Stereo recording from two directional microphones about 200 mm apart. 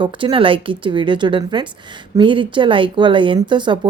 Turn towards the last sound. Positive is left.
turn(degrees=-25)  # may be behind; listen again after turning